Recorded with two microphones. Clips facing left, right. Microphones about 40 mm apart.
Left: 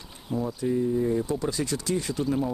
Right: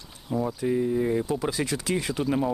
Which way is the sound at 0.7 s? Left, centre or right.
Right.